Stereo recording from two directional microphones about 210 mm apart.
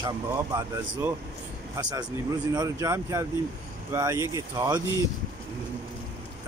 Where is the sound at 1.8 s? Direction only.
20° right (ahead or behind).